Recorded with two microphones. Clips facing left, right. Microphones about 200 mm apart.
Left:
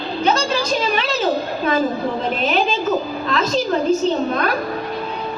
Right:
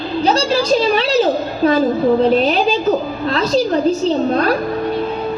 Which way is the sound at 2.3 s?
35° right (ahead or behind).